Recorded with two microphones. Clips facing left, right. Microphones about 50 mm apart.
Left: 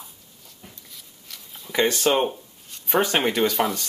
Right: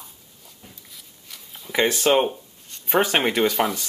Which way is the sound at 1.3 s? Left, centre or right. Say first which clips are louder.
Right 1 dB; centre.